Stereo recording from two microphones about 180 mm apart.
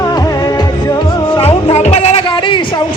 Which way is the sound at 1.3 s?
30° left (ahead or behind).